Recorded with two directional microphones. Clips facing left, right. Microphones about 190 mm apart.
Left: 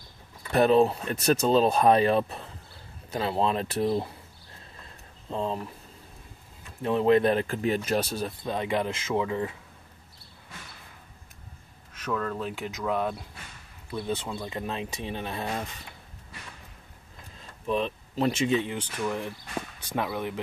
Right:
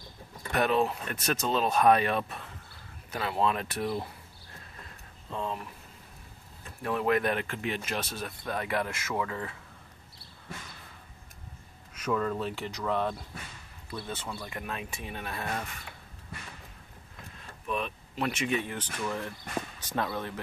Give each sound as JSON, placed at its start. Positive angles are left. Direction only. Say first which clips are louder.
{"t": 0.5, "sound": "speech", "louder": "left 6 dB", "side_deg": 30}
{"t": 5.3, "sound": "speech", "louder": "left 4 dB", "side_deg": 30}
{"t": 6.8, "sound": "speech", "louder": "left 6 dB", "side_deg": 25}
{"t": 8.3, "sound": "speech", "louder": "left 4 dB", "side_deg": 20}
{"t": 11.9, "sound": "speech", "louder": "right 1 dB", "side_deg": -5}
{"t": 17.6, "sound": "speech", "louder": "left 6 dB", "side_deg": 30}